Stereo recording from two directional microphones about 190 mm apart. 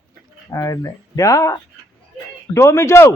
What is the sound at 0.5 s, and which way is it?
A man's voice, 15° left (ahead or behind).